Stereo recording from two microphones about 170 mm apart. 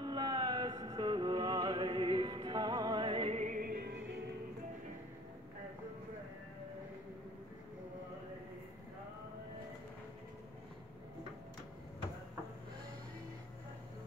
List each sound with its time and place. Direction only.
0.0 s music: 25° right (ahead or behind); by 3.9 s 60° right (ahead or behind)